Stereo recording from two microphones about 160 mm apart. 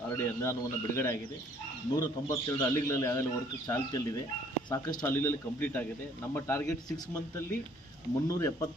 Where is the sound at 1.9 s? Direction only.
25° left (ahead or behind).